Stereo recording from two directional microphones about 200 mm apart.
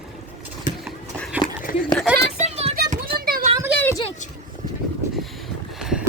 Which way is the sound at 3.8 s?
15° left (ahead or behind).